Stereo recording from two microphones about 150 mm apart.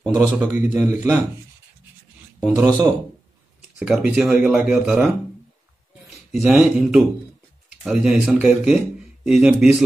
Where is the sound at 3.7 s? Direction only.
5° right (ahead or behind).